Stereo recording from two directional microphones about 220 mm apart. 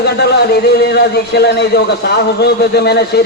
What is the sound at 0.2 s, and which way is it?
A man's voice, 50° left (ahead or behind).